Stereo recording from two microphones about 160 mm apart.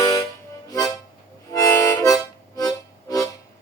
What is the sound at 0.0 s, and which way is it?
Music, 20° left (ahead or behind).